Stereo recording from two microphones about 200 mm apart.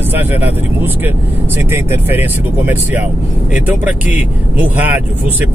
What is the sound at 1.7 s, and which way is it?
Speech, 10° right (ahead or behind).